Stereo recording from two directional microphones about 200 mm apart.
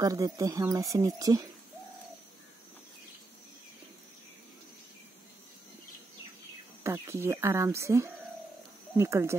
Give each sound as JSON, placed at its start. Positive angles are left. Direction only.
{"t": 0.0, "sound": "speech", "side_deg": -15}
{"t": 6.8, "sound": "speech", "side_deg": -15}